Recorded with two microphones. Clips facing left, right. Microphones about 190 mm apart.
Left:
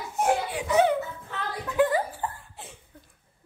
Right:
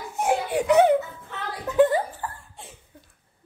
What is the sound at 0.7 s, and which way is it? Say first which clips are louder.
Speech: right 4 dB; 60° right (ahead or behind).